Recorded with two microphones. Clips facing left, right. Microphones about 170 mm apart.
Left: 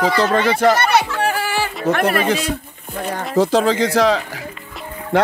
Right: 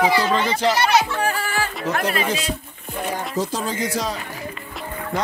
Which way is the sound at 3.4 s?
70° left (ahead or behind).